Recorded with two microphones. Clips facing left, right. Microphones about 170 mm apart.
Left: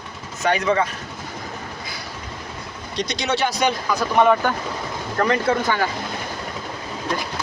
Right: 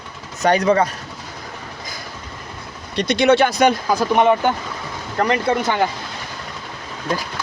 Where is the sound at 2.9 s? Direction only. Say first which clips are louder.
Right 9 dB; 60° right (ahead or behind).